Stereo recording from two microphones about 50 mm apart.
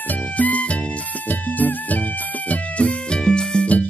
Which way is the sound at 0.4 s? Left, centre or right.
Left.